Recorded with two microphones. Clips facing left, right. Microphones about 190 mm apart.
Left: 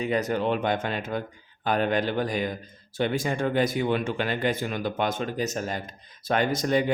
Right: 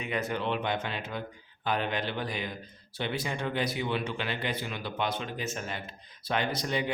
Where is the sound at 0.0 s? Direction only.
40° left (ahead or behind).